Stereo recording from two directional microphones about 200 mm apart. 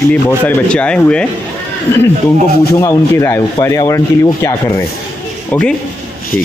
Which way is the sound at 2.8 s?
15° left (ahead or behind).